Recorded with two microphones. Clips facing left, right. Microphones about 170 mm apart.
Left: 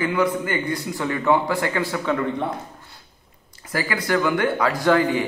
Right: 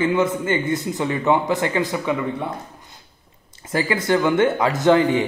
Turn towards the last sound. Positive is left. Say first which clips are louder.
# right 3 dB
turn(degrees=-20)  # may be behind; listen again after turning